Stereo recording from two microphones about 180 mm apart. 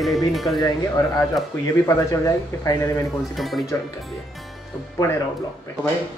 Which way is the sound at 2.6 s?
20° left (ahead or behind).